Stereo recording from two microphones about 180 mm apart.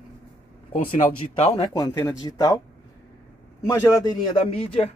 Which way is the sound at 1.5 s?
20° left (ahead or behind).